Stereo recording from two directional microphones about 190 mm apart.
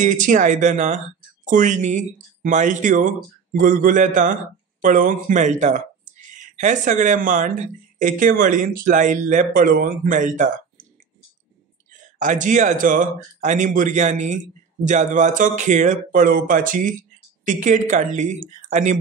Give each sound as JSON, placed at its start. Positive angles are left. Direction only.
{"t": 0.0, "sound": "speech", "side_deg": -40}
{"t": 12.0, "sound": "speech", "side_deg": -40}